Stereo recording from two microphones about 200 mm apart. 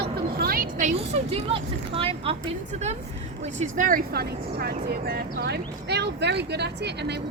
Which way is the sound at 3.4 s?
40° right (ahead or behind).